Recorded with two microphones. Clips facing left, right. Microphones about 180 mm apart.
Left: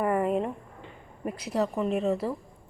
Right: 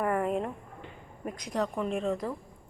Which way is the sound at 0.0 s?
5° left (ahead or behind).